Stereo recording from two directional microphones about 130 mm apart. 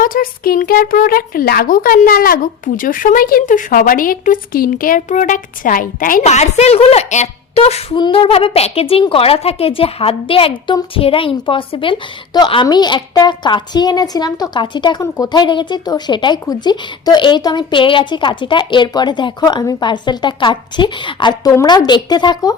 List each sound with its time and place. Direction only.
0.0 s speech: 90° left; by 7.9 s 50° left (ahead or behind)
7.9 s a woman's voice: 40° left (ahead or behind)